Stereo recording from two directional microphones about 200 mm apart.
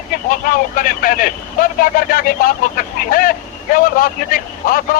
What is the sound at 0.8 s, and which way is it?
Speech, 45° left (ahead or behind).